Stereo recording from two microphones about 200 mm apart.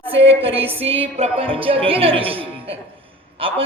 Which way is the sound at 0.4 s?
30° right (ahead or behind).